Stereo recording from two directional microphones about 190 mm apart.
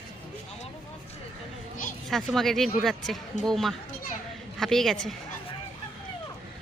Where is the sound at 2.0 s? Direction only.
Centre (ahead or behind).